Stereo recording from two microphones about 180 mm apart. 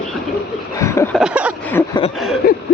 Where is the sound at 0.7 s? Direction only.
15° left (ahead or behind).